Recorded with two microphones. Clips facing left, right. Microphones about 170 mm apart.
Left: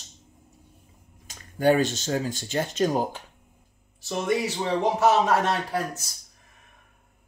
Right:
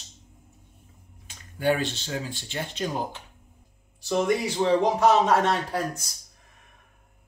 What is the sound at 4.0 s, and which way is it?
A man's voice, centre (ahead or behind).